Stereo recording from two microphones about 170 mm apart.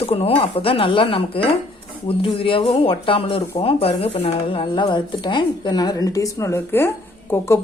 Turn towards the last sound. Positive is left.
turn(degrees=15)  # may be behind; listen again after turning